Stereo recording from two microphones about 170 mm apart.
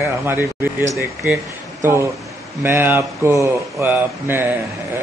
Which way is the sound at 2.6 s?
10° right (ahead or behind).